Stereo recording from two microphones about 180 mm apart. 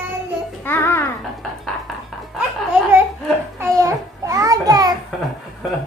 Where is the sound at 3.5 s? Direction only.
20° right (ahead or behind).